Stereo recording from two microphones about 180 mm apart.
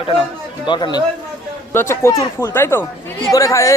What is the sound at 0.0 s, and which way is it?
A man's voice, 30° left (ahead or behind).